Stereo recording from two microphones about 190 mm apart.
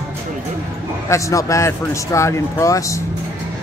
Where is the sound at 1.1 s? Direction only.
15° left (ahead or behind).